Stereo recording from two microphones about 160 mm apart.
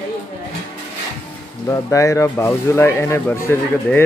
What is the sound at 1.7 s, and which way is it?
Speech, 20° left (ahead or behind).